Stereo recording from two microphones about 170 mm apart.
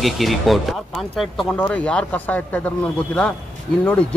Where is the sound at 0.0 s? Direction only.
Centre (ahead or behind).